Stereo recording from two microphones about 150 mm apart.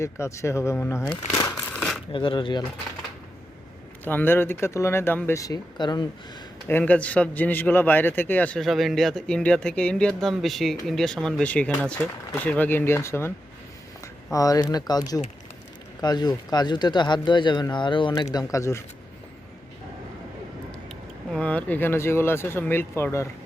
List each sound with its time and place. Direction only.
0.0 s speech: 20° left (ahead or behind)
1.7 s a sound: 5° left (ahead or behind)
2.1 s speech: 35° left (ahead or behind)
4.0 s a man's voice: 15° left (ahead or behind); by 6.1 s 30° left (ahead or behind)
6.7 s a man's voice: 10° left (ahead or behind)
14.3 s speech: 25° left (ahead or behind)
21.3 s a man's voice: 10° left (ahead or behind)